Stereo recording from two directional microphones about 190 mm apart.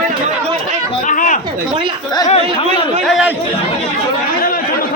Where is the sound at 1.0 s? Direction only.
45° left (ahead or behind).